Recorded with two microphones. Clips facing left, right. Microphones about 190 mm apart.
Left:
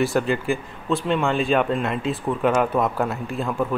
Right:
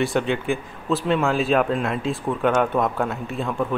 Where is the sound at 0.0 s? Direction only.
Centre (ahead or behind).